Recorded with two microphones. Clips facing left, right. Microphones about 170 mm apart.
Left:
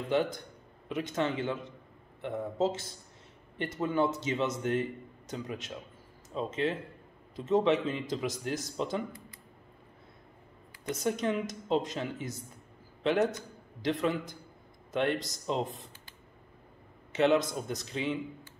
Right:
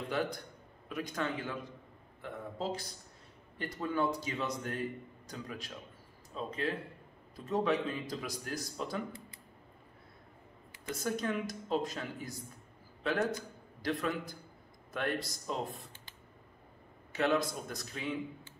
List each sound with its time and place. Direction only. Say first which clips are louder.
0.1 s a man's voice: left 7 dB; 20° left (ahead or behind)
10.9 s a man's voice: left 4 dB; 20° left (ahead or behind)
14.9 s a man's voice: left 5 dB; 20° left (ahead or behind)
17.1 s a man's voice: left 5 dB; 20° left (ahead or behind)